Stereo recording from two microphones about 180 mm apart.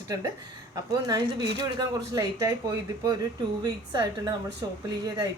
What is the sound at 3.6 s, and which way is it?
Speech, 20° right (ahead or behind).